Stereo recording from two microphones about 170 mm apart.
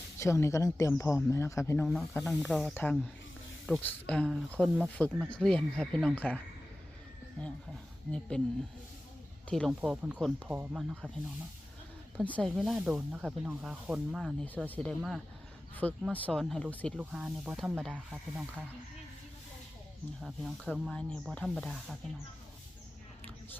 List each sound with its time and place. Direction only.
0.2 s speech: 15° left (ahead or behind)
2.0 s speech: centre (ahead or behind)
8.3 s speech: 5° left (ahead or behind)
12.2 s speech: 10° left (ahead or behind)
12.5 s speech: 5° right (ahead or behind)
14.4 s speech: 10° left (ahead or behind)
20.2 s speech: centre (ahead or behind)